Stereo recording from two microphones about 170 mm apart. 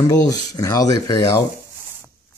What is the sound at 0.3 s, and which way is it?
Speech, 20° left (ahead or behind).